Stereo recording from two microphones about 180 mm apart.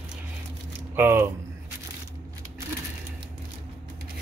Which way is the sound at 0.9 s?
10° right (ahead or behind).